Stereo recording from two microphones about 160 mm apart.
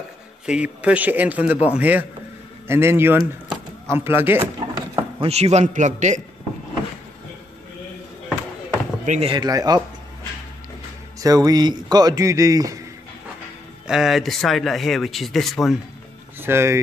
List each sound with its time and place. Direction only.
0.5 s speech: 5° right (ahead or behind)
4.7 s speech: 30° right (ahead or behind); by 6.2 s 50° right (ahead or behind)
9.0 s speech: 50° right (ahead or behind)
9.3 s a man's voice: 25° right (ahead or behind)
11.1 s a man's voice: 25° right (ahead or behind)
13.8 s speech: centre (ahead or behind)
16.3 s speech: 15° right (ahead or behind)